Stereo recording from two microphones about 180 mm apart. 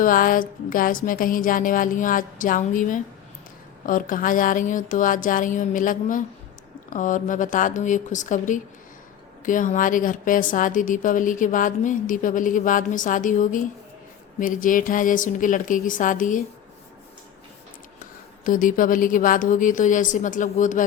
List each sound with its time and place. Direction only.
0.0 s a woman's voice: 50° left (ahead or behind)
18.4 s a woman's voice: 50° left (ahead or behind)